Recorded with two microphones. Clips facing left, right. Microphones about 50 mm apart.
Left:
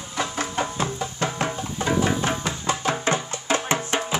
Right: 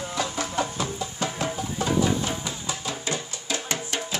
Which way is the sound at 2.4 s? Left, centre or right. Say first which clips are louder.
Left 7 dB; left.